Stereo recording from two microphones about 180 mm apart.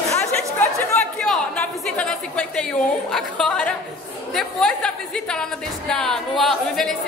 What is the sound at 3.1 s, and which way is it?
Speech, 5° left (ahead or behind).